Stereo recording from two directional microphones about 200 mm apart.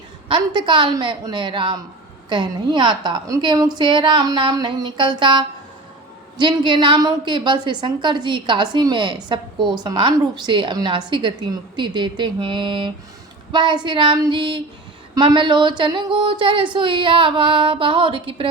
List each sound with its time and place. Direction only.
0.3 s a woman's voice: 25° right (ahead or behind)